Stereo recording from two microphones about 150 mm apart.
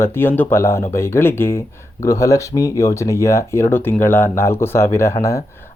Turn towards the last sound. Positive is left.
turn(degrees=20)  # may be behind; listen again after turning